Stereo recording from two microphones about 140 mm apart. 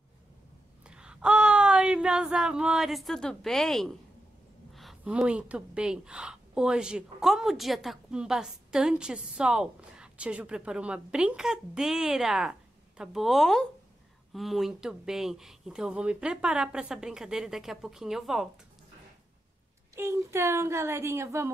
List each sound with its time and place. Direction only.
0.8 s a sound: 5° right (ahead or behind)
4.7 s a woman's voice: 5° right (ahead or behind)
20.0 s a woman's voice: 20° right (ahead or behind)